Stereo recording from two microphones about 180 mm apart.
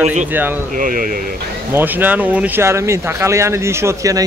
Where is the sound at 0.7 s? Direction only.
50° right (ahead or behind).